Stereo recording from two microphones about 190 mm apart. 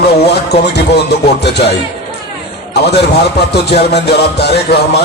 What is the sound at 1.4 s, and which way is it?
Speech, 60° left (ahead or behind).